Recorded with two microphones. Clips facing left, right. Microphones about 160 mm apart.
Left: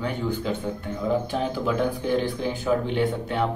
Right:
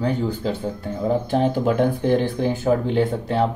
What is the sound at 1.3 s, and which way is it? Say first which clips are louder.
Speech: right 6 dB; 50° right (ahead or behind).